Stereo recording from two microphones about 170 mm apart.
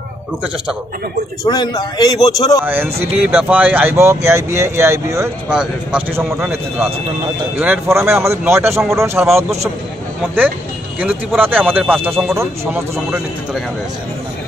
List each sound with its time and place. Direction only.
1.4 s a man's voice: 25° left (ahead or behind)
2.6 s speech: 10° right (ahead or behind)
11.0 s speech: 10° right (ahead or behind)